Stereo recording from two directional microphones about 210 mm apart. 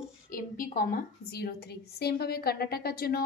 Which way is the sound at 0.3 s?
40° left (ahead or behind).